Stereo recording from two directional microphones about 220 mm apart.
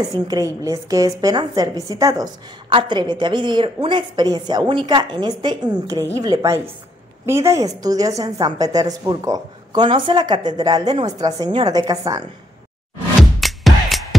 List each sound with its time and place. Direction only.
0.1 s a woman's voice: 15° right (ahead or behind)
13.2 s music: centre (ahead or behind)